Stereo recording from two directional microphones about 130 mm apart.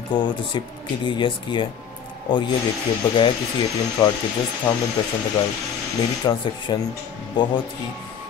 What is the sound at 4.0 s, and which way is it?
Speech, 35° left (ahead or behind).